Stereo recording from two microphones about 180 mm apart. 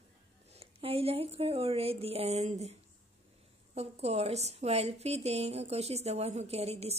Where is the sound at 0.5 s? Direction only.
30° right (ahead or behind).